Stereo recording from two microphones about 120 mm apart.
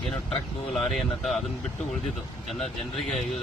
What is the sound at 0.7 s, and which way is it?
Speech, centre (ahead or behind).